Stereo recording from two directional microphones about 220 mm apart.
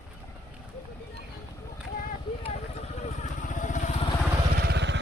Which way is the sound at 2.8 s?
30° left (ahead or behind).